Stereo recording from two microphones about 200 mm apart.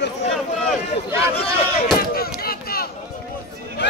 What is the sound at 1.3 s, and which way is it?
Speech, 30° left (ahead or behind).